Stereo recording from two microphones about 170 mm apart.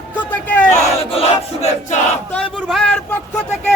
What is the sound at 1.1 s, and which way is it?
Battle cry, 35° left (ahead or behind).